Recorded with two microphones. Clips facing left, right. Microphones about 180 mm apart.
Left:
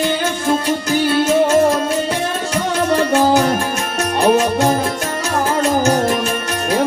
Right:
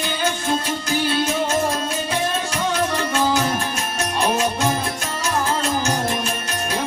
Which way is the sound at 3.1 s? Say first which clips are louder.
Left 7 dB; 60° left (ahead or behind).